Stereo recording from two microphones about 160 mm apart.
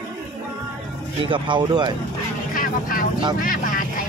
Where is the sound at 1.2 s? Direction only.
30° right (ahead or behind).